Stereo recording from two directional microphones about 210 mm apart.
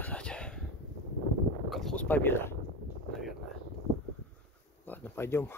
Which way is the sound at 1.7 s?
Centre (ahead or behind).